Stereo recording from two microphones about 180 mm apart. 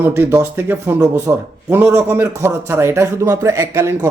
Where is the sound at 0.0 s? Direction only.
15° right (ahead or behind).